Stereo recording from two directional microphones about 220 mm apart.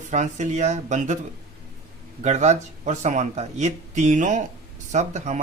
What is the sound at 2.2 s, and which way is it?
A man's voice, 30° right (ahead or behind).